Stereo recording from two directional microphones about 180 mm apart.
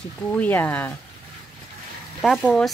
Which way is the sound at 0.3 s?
10° left (ahead or behind).